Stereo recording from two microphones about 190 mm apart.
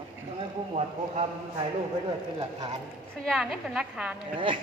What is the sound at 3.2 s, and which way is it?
Speech, centre (ahead or behind).